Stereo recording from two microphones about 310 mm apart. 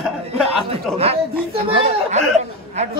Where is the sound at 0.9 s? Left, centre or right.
Centre.